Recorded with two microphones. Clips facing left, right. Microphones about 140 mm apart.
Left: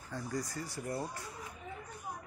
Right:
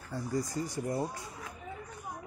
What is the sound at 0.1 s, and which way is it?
Speech, 10° right (ahead or behind).